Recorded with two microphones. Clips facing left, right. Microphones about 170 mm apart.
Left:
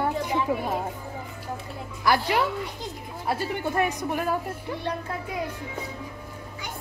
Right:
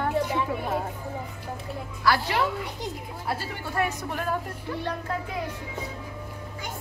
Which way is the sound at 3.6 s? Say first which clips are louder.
Left 3 dB; 20° left (ahead or behind).